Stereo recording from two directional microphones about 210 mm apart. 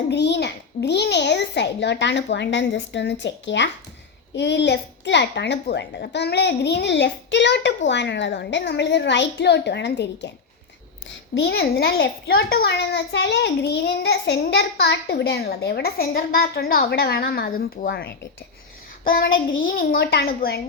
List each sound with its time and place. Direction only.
0.1 s a child's voice: 55° left (ahead or behind)